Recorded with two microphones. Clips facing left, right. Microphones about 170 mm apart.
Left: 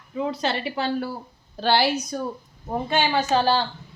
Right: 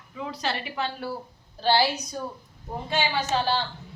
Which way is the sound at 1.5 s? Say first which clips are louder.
Left 1 dB; 75° left (ahead or behind).